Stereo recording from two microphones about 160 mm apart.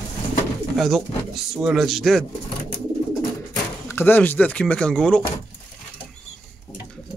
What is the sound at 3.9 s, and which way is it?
Speech, 15° left (ahead or behind).